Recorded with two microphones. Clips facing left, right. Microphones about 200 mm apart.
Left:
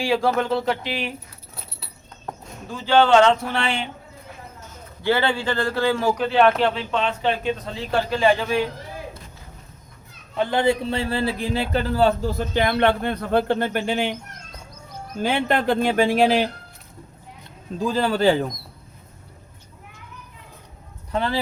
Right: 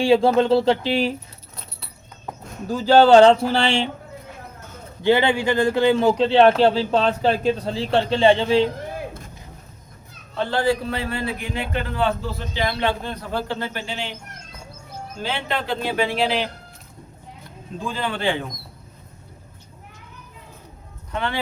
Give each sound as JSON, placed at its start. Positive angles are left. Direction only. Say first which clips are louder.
{"t": 0.0, "sound": "a man's voice", "louder": "right 5 dB", "side_deg": -25}
{"t": 2.6, "sound": "speech", "louder": "right 4 dB", "side_deg": -40}
{"t": 5.0, "sound": "a man's voice", "louder": "right 4 dB", "side_deg": -15}
{"t": 10.3, "sound": "a man's voice", "louder": "left 1 dB", "side_deg": 20}
{"t": 15.2, "sound": "speech", "louder": "left 6 dB", "side_deg": 50}
{"t": 17.7, "sound": "a man's voice", "louder": "left 6 dB", "side_deg": 40}
{"t": 21.1, "sound": "speech", "louder": "left 2 dB", "side_deg": 35}